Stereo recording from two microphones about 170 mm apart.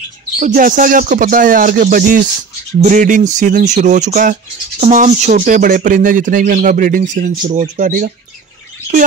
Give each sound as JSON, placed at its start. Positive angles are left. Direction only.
{"t": 0.4, "sound": "speech", "side_deg": -55}